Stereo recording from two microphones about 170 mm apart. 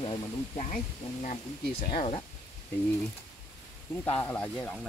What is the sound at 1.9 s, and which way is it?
Speech, 35° left (ahead or behind).